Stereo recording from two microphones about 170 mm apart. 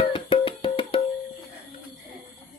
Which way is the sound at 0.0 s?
30° left (ahead or behind).